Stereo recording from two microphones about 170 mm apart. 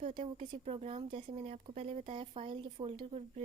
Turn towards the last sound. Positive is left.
turn(degrees=-35)  # may be behind; listen again after turning